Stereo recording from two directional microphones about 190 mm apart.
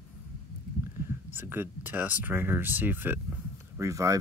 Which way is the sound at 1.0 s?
10° right (ahead or behind).